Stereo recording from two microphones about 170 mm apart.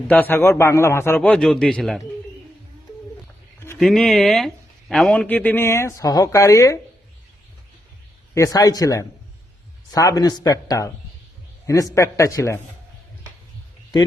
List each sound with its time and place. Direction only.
0.1 s speech: 10° left (ahead or behind)
3.8 s speech: centre (ahead or behind); by 6.7 s 20° left (ahead or behind)
8.4 s a man's voice: 20° left (ahead or behind)